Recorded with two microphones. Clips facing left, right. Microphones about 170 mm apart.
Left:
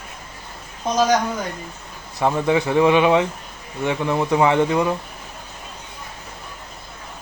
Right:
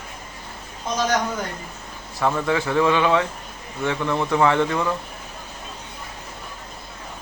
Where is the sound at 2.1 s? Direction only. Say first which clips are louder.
Left 3 dB; 20° left (ahead or behind).